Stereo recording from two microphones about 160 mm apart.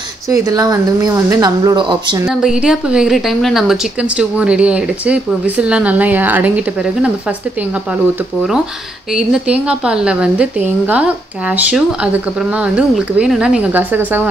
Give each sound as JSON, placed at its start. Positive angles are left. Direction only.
{"t": 0.3, "sound": "speech", "side_deg": -20}
{"t": 2.2, "sound": "a woman's voice", "side_deg": -5}
{"t": 9.1, "sound": "a woman's voice", "side_deg": -5}